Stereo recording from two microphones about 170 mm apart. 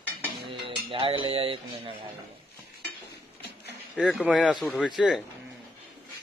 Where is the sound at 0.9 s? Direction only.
30° right (ahead or behind).